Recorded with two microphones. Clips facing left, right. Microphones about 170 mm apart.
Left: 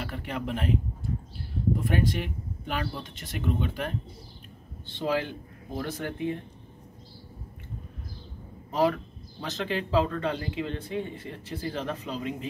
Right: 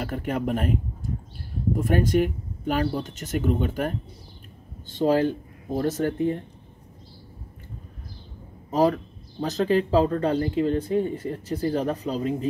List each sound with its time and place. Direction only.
0.0 s speech: 45° right (ahead or behind)
1.8 s speech: 45° right (ahead or behind)
8.6 s speech: 40° right (ahead or behind)